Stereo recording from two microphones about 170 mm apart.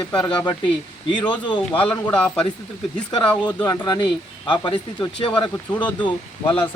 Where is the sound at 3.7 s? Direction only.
25° left (ahead or behind).